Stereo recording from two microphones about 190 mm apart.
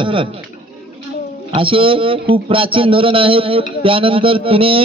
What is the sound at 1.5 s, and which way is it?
A man's voice, 30° right (ahead or behind).